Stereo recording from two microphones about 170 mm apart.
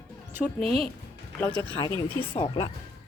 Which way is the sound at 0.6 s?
35° right (ahead or behind).